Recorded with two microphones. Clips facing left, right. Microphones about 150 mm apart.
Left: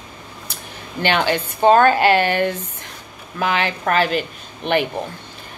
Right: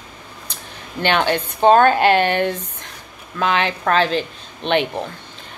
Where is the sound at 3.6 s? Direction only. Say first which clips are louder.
Even; 10° left (ahead or behind).